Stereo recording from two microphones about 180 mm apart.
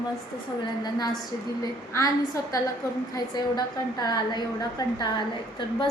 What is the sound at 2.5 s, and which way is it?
A woman's voice, 20° left (ahead or behind).